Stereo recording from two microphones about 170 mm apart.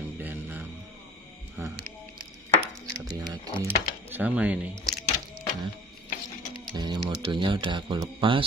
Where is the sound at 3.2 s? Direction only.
20° right (ahead or behind).